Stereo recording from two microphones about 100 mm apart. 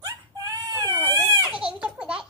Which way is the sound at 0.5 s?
35° right (ahead or behind).